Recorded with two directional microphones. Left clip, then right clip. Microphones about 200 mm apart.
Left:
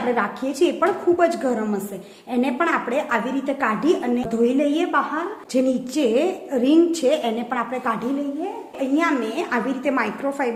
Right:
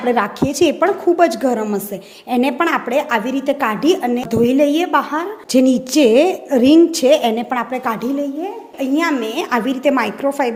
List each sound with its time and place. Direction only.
0.1 s a woman's voice: 40° right (ahead or behind)